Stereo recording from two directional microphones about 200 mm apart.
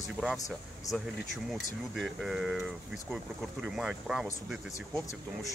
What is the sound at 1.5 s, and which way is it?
Speech, centre (ahead or behind).